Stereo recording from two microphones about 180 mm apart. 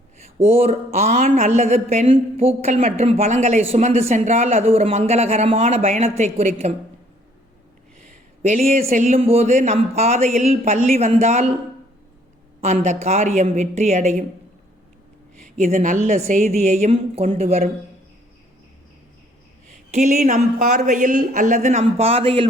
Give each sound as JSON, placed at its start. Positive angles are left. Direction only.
{"t": 0.4, "sound": "speech", "side_deg": -35}
{"t": 8.4, "sound": "speech", "side_deg": -40}
{"t": 12.6, "sound": "speech", "side_deg": -40}
{"t": 15.4, "sound": "speech", "side_deg": -40}
{"t": 19.9, "sound": "speech", "side_deg": -40}